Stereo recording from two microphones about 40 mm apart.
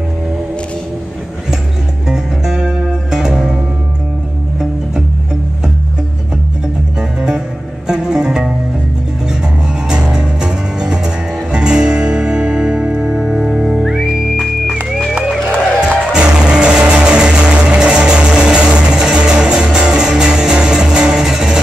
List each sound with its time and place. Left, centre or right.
2.0 s music: centre
7.0 s music: centre
13.0 s music: centre
14.4 s music: centre
16.1 s music: right